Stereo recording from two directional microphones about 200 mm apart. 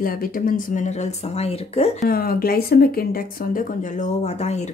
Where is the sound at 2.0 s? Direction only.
50° left (ahead or behind).